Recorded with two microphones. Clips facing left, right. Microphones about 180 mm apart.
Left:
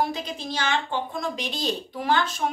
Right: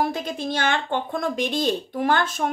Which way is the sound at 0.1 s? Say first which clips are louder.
Right 4 dB; 55° right (ahead or behind).